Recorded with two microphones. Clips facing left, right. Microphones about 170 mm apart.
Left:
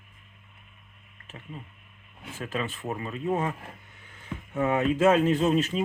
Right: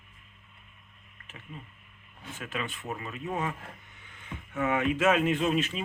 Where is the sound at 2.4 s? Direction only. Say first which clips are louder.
Left 4 dB; 35° left (ahead or behind).